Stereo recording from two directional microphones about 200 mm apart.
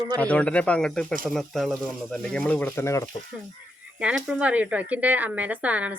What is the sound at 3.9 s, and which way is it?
A woman's voice, 5° right (ahead or behind).